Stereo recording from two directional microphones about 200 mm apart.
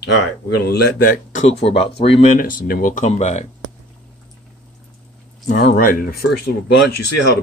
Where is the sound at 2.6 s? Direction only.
45° left (ahead or behind).